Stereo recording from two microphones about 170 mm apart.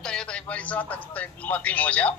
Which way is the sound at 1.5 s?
10° left (ahead or behind).